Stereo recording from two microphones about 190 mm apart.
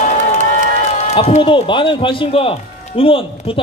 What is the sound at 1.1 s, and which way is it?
A man's voice, 35° left (ahead or behind).